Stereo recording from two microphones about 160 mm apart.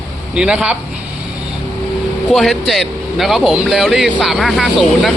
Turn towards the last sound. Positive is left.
turn(degrees=0)  # may be behind; listen again after turning